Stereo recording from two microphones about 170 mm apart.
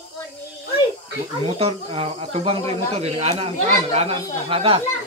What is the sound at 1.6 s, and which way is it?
Speech, 35° right (ahead or behind).